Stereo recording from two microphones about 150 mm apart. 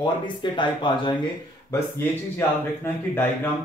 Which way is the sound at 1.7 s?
15° left (ahead or behind).